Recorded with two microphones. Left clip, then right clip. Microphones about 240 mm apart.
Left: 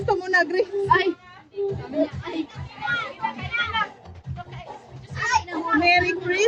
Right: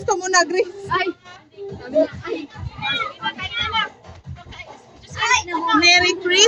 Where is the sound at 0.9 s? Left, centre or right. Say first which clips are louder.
Left 6 dB; left.